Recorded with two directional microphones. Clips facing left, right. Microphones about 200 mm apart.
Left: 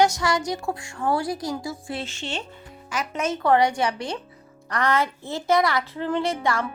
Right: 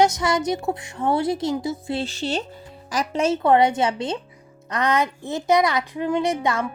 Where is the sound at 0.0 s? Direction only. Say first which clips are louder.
Right 2 dB; 20° right (ahead or behind).